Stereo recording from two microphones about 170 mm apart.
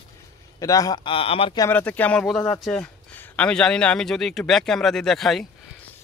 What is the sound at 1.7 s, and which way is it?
Speech, 10° left (ahead or behind).